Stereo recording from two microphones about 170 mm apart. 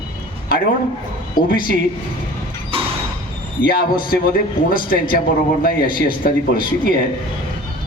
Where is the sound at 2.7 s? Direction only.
35° right (ahead or behind).